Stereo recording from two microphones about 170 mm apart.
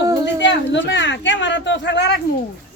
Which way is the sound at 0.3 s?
90° left.